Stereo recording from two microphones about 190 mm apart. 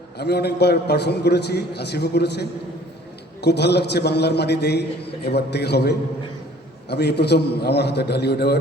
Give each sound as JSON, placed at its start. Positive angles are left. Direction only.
{"t": 0.2, "sound": "a man's voice", "side_deg": 60}